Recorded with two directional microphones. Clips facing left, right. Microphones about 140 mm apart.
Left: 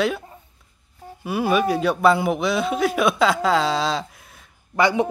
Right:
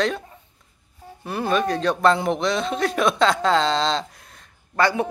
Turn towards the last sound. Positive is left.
turn(degrees=15)  # may be behind; listen again after turning